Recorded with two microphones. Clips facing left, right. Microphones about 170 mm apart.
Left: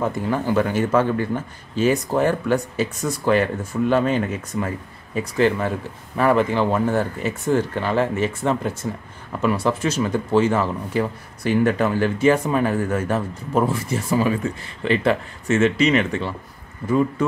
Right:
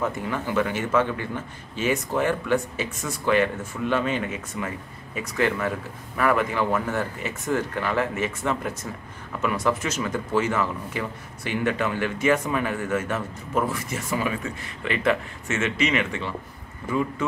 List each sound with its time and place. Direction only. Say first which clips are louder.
0.0 s speech: left 5 dB; 35° left (ahead or behind)